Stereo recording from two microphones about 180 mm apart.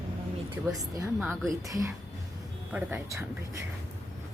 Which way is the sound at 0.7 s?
20° right (ahead or behind).